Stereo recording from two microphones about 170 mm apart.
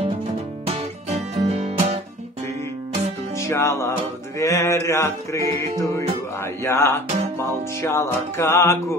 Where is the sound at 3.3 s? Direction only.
15° left (ahead or behind).